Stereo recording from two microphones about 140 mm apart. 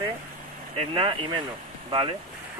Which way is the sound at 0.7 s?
40° right (ahead or behind).